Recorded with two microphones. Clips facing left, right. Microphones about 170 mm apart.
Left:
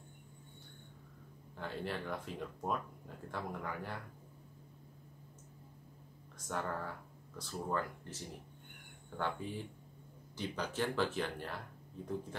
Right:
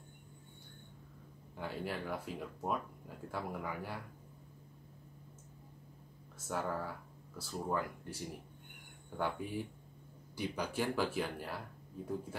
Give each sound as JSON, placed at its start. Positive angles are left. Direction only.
{"t": 1.6, "sound": "speech", "side_deg": -10}
{"t": 6.3, "sound": "speech", "side_deg": -5}